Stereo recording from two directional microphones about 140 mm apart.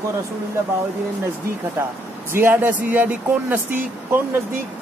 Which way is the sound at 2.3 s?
15° right (ahead or behind).